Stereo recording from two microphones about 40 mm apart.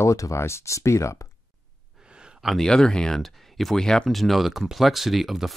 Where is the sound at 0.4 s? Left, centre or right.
Left.